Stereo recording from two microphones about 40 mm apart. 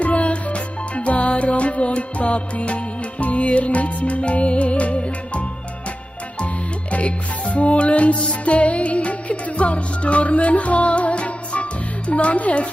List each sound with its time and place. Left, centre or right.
0.0 s music: left